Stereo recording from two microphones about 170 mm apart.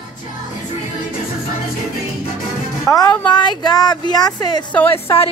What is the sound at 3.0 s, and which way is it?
Speech, 25° left (ahead or behind).